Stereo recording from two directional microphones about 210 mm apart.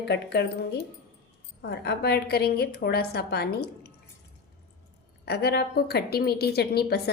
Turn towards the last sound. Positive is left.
turn(degrees=50)  # may be behind; listen again after turning